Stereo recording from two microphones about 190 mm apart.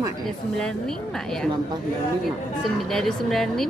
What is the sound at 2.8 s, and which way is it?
Speech, centre (ahead or behind).